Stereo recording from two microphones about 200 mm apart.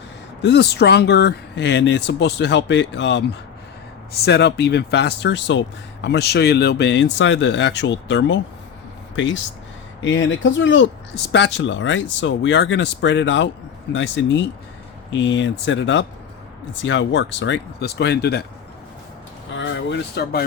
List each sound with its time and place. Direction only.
0.4 s speech: 60° left (ahead or behind)
19.5 s speech: 65° left (ahead or behind)